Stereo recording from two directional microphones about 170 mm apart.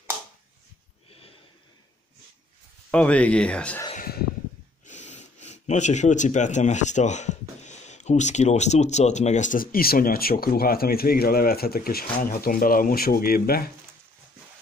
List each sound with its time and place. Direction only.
2.9 s speech: 5° left (ahead or behind)
3.9 s a sound: 55° left (ahead or behind)
4.8 s speech: 45° left (ahead or behind); by 13.7 s 60° left (ahead or behind)